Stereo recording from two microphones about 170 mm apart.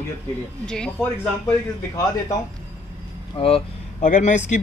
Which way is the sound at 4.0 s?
50° left (ahead or behind).